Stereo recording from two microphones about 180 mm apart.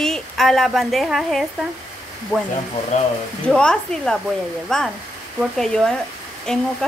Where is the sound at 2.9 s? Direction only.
40° left (ahead or behind).